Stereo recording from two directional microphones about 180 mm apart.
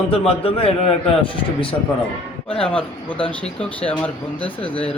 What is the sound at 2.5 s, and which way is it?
Speech, 5° left (ahead or behind).